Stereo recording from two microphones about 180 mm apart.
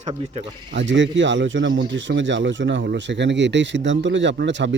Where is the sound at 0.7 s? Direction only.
85° right.